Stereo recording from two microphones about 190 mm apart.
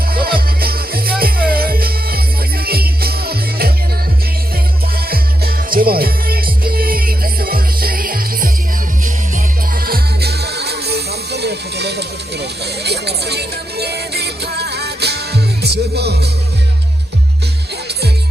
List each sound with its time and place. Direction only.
0.1 s music: 50° right (ahead or behind)
5.0 s music: 50° right (ahead or behind)
9.8 s music: 55° right (ahead or behind)